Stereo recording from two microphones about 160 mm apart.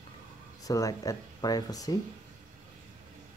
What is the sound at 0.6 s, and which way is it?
Speech, 20° left (ahead or behind).